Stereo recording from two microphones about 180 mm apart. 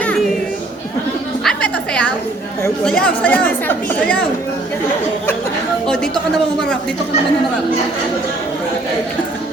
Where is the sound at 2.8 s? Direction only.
5° left (ahead or behind).